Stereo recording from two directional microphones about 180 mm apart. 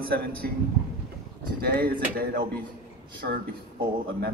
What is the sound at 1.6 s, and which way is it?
Speech, 60° right (ahead or behind).